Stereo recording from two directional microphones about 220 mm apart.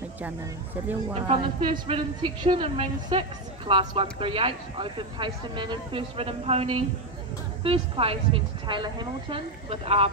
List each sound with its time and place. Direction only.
1.2 s a woman's voice: 25° right (ahead or behind)